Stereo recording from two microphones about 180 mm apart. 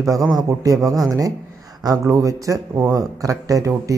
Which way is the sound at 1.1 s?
20° right (ahead or behind).